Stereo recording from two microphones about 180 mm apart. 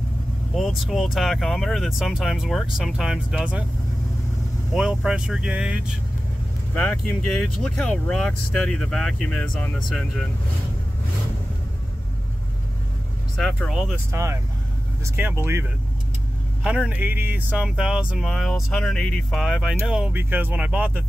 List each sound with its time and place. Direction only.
0.6 s speech: centre (ahead or behind)
4.7 s speech: 5° right (ahead or behind)
6.7 s speech: 5° left (ahead or behind)
13.4 s speech: centre (ahead or behind)
14.1 s speech: 15° right (ahead or behind)